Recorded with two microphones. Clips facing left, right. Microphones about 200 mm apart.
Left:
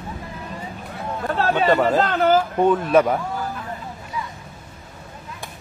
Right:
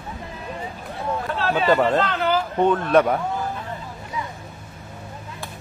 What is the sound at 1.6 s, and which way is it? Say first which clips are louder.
Speech: even; centre (ahead or behind).